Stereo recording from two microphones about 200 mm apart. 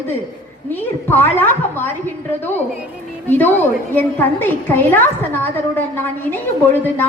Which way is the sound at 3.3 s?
10° left (ahead or behind).